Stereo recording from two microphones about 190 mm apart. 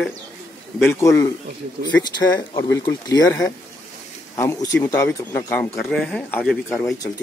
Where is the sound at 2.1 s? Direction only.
20° left (ahead or behind).